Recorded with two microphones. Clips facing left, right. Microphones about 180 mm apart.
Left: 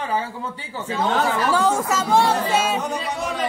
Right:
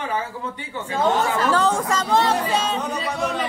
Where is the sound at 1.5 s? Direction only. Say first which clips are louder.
Even; 10° left (ahead or behind).